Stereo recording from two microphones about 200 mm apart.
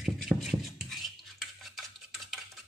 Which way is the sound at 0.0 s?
Centre (ahead or behind).